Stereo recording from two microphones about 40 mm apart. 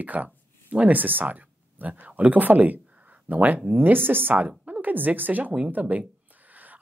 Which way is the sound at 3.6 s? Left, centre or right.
Right.